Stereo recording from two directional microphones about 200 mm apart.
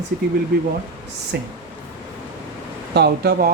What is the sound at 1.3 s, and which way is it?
Speech, 55° right (ahead or behind).